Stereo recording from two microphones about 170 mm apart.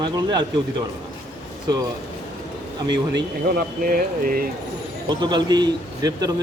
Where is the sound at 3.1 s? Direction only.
65° right (ahead or behind).